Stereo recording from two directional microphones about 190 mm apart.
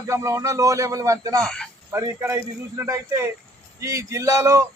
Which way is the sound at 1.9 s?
15° right (ahead or behind).